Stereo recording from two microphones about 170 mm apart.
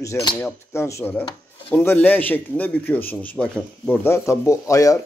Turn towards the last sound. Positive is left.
turn(degrees=20)  # may be behind; listen again after turning